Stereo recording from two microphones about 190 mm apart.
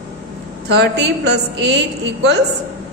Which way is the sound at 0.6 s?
60° right (ahead or behind).